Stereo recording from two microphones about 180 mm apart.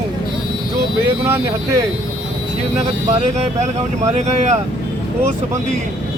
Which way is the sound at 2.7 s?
40° right (ahead or behind).